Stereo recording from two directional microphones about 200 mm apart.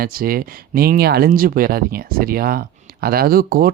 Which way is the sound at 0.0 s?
45° right (ahead or behind).